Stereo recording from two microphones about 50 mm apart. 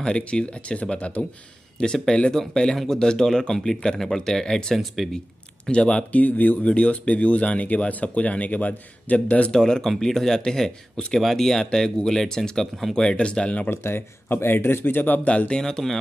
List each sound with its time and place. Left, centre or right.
0.0 s speech: left; by 5.2 s centre
5.7 s speech: centre
6.1 s speech: left
6.6 s speech: left
9.5 s speech: centre
11.1 s speech: centre; by 13.7 s left
13.7 s speech: left; by 16.0 s centre